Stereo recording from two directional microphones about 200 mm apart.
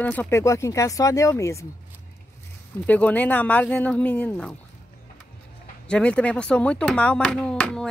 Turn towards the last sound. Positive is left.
turn(degrees=5)  # may be behind; listen again after turning